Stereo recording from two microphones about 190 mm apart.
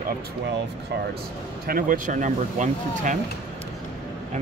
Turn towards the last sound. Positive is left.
turn(degrees=-40)  # may be behind; listen again after turning